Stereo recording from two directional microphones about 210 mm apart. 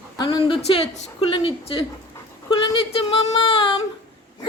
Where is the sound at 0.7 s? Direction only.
25° left (ahead or behind).